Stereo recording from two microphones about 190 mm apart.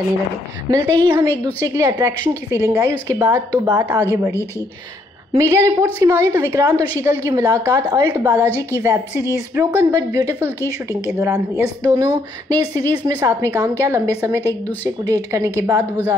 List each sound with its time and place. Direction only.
0.7 s a woman's voice: 20° right (ahead or behind)
5.5 s a woman's voice: 15° right (ahead or behind)